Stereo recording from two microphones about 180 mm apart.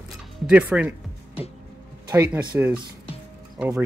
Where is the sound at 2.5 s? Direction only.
10° right (ahead or behind).